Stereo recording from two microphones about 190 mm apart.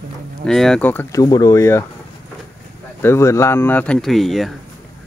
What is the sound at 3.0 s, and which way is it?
Speech, 15° left (ahead or behind).